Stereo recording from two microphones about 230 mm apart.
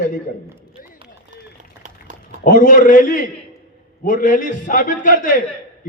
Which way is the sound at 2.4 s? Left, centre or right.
Left.